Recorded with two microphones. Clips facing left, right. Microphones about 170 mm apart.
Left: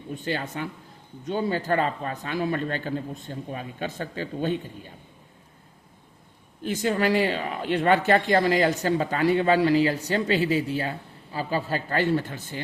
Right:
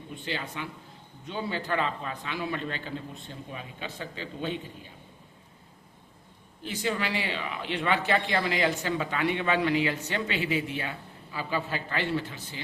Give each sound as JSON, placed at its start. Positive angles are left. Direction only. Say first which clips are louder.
{"t": 0.3, "sound": "speech", "louder": "left 5 dB", "side_deg": 45}
{"t": 6.7, "sound": "speech", "louder": "left 7 dB", "side_deg": 45}